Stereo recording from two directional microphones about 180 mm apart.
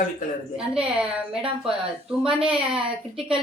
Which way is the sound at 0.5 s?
5° right (ahead or behind).